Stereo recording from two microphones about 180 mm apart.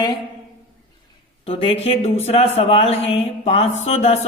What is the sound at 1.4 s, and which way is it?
Speech, 35° left (ahead or behind).